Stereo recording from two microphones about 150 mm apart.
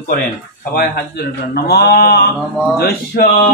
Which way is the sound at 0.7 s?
90° left.